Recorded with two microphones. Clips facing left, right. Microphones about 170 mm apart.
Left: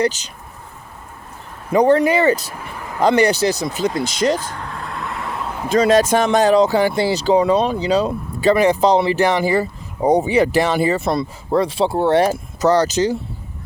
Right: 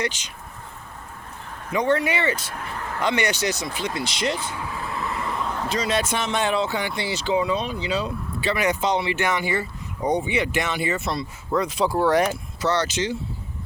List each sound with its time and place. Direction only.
0.0 s speech: 40° left (ahead or behind)
1.7 s speech: 35° left (ahead or behind)
2.6 s a sound: 10° left (ahead or behind)
3.0 s speech: 35° left (ahead or behind)
4.5 s vehicle: 5° right (ahead or behind)
5.6 s speech: 50° left (ahead or behind)
11.0 s speech: 50° left (ahead or behind)
11.5 s speech: 30° left (ahead or behind)